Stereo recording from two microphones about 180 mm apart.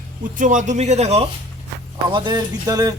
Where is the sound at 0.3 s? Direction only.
45° right (ahead or behind).